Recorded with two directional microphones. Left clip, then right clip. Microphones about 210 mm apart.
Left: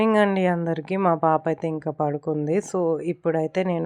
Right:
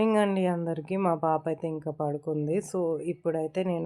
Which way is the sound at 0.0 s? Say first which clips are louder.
Left 5 dB; 25° left (ahead or behind).